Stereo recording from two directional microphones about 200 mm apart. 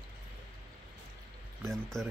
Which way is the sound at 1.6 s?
Centre (ahead or behind).